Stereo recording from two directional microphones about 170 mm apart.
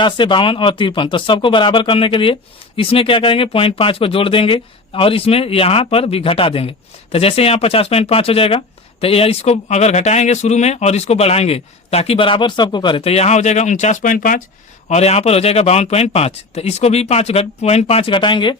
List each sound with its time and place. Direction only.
0.0 s speech: 30° left (ahead or behind); by 14.4 s 55° left (ahead or behind)
14.8 s speech: 40° left (ahead or behind)